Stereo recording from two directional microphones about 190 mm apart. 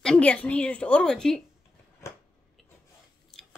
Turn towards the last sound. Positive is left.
turn(degrees=0)  # may be behind; listen again after turning